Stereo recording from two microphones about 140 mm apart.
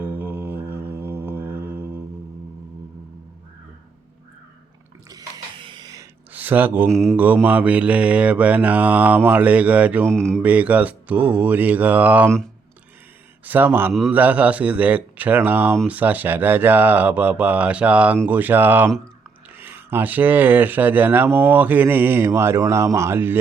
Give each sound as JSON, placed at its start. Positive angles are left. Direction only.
{"t": 0.0, "sound": "music", "side_deg": -15}
{"t": 5.0, "sound": "a sound", "side_deg": -30}
{"t": 6.3, "sound": "speech", "side_deg": -10}
{"t": 6.8, "sound": "mantra", "side_deg": 5}
{"t": 7.4, "sound": "speech", "side_deg": -10}
{"t": 10.1, "sound": "speech", "side_deg": 5}
{"t": 10.4, "sound": "speech", "side_deg": -10}
{"t": 13.4, "sound": "speech", "side_deg": -15}